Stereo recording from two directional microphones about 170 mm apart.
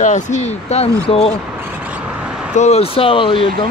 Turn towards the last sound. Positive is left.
turn(degrees=30)  # may be behind; listen again after turning